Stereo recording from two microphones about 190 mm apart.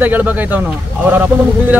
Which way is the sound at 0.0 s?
10° right (ahead or behind).